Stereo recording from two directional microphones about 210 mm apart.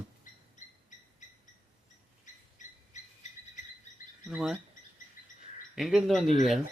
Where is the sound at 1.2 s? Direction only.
35° left (ahead or behind).